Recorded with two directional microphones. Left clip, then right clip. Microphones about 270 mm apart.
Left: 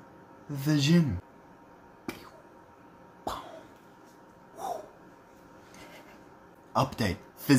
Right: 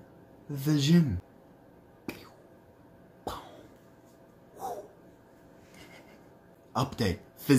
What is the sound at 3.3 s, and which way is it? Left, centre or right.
Cough, centre.